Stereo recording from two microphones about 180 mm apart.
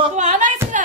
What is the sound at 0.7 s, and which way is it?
Music, 40° right (ahead or behind).